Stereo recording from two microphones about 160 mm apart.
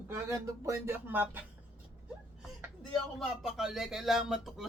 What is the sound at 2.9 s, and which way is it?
Speech, centre (ahead or behind).